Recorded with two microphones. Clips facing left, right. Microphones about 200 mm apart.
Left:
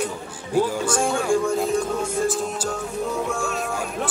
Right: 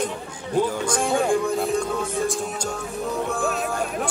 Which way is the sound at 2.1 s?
Centre (ahead or behind).